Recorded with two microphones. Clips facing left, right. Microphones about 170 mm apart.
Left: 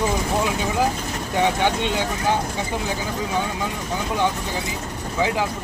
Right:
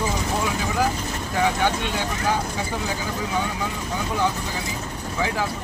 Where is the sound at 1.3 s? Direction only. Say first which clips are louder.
Left 2 dB; 20° left (ahead or behind).